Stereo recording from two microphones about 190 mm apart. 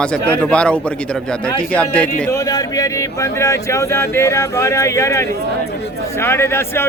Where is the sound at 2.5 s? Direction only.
15° left (ahead or behind).